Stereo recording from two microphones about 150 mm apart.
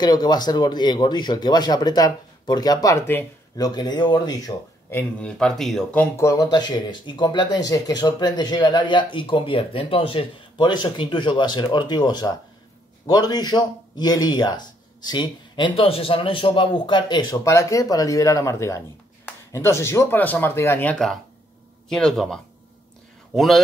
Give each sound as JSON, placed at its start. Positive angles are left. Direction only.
{"t": 0.0, "sound": "speech", "side_deg": 30}
{"t": 4.9, "sound": "speech", "side_deg": 5}